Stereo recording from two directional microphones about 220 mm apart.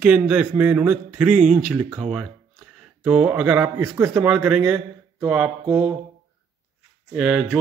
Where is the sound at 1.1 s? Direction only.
90° right.